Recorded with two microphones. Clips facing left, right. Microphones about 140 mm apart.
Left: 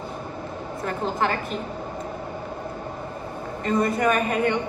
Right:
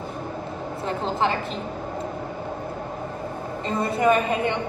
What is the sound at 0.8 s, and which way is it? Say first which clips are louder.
Speech: right 1 dB; 25° right (ahead or behind).